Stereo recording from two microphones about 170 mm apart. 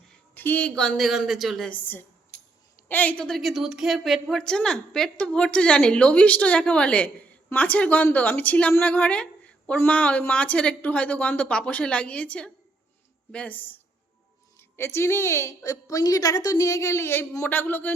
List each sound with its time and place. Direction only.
0.3 s a woman's voice: 10° left (ahead or behind)
2.3 s a sound: 60° right (ahead or behind)
2.9 s a woman's voice: 10° left (ahead or behind)